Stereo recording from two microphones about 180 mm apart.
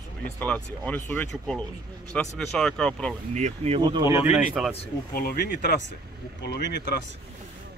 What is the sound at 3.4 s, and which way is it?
Speech, 40° right (ahead or behind).